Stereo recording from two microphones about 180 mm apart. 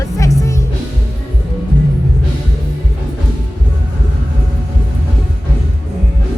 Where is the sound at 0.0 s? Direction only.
20° left (ahead or behind).